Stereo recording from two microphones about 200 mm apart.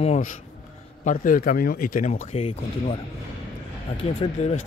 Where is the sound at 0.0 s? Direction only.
35° left (ahead or behind).